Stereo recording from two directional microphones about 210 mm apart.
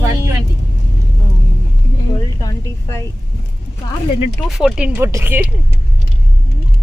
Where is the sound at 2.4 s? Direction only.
15° left (ahead or behind).